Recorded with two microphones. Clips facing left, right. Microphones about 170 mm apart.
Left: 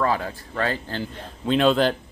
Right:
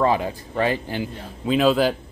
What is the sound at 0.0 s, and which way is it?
Speech, 15° right (ahead or behind).